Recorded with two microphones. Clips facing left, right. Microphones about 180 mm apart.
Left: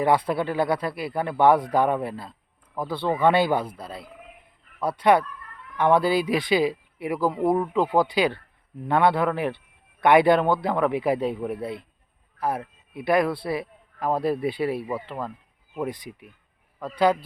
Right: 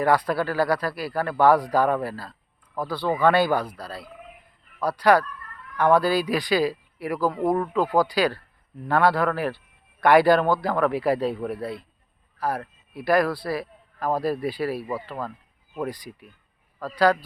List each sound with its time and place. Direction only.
0.0 s a man's voice: 25° left (ahead or behind)